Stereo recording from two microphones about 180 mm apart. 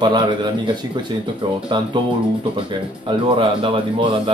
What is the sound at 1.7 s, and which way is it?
Speech, 25° right (ahead or behind).